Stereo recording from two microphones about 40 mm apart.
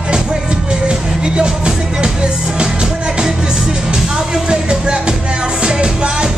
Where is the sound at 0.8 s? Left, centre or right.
Right.